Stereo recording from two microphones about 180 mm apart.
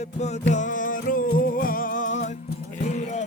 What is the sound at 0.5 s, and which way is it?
Music, 45° left (ahead or behind).